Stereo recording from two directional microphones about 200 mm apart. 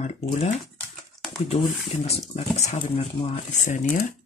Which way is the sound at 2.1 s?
30° left (ahead or behind).